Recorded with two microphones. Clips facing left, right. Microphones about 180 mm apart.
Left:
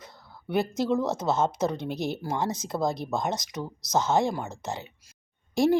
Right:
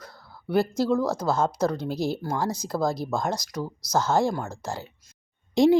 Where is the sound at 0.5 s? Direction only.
20° left (ahead or behind).